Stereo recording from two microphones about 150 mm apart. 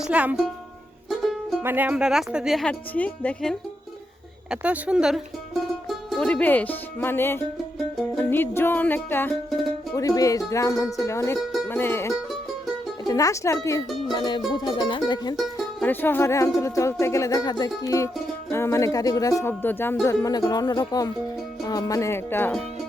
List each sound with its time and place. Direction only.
0.0 s speech: 10° right (ahead or behind)
1.2 s music: centre (ahead or behind)
1.6 s speech: 10° right (ahead or behind); by 3.6 s 5° left (ahead or behind)
4.5 s speech: 5° right (ahead or behind); by 7.4 s 15° left (ahead or behind)
7.9 s music: centre (ahead or behind)
8.3 s music: 15° left (ahead or behind)
9.9 s speech: 20° left (ahead or behind)
11.7 s music: 15° left (ahead or behind)
13.1 s speech: 20° left (ahead or behind)
14.1 s music: 30° left (ahead or behind)
15.8 s music: 15° left (ahead or behind)
16.6 s speech: 20° left (ahead or behind)